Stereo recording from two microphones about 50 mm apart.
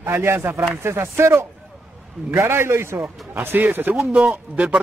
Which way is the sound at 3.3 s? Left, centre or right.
Right.